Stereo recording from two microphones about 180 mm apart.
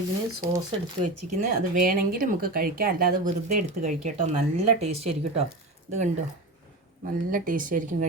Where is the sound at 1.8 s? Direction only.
50° right (ahead or behind).